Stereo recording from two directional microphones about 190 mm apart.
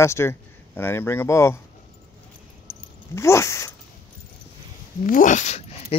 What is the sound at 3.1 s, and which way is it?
Speech, 15° left (ahead or behind).